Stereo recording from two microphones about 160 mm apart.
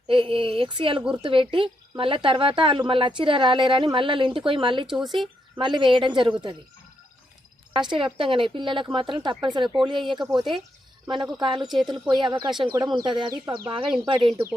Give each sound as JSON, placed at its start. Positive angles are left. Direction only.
{"t": 0.1, "sound": "a woman's voice", "side_deg": -35}
{"t": 4.9, "sound": "speech", "side_deg": 0}
{"t": 5.5, "sound": "a woman's voice", "side_deg": -30}
{"t": 7.7, "sound": "a woman's voice", "side_deg": -30}
{"t": 12.5, "sound": "speech", "side_deg": -5}
{"t": 12.7, "sound": "a woman's voice", "side_deg": -25}